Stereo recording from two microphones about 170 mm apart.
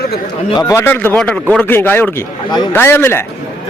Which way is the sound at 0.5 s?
20° left (ahead or behind).